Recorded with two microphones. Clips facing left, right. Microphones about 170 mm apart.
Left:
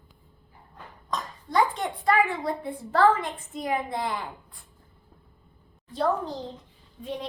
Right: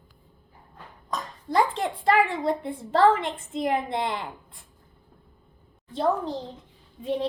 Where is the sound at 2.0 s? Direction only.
25° right (ahead or behind).